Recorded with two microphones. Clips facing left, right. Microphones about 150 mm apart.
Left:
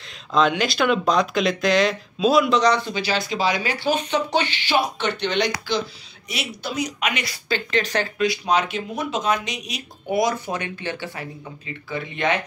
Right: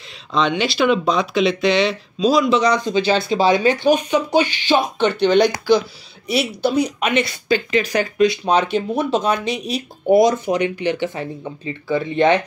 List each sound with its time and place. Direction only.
0.3 s speech: centre (ahead or behind)
2.6 s speech: 15° right (ahead or behind)
4.9 s speech: 35° right (ahead or behind)